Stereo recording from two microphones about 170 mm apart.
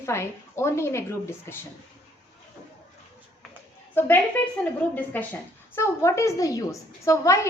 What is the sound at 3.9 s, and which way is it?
A woman's voice, 10° left (ahead or behind).